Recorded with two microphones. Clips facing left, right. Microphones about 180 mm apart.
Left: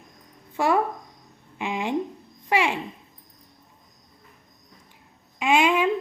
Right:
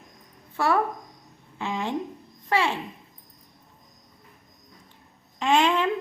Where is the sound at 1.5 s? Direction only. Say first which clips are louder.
Left 2 dB; 15° left (ahead or behind).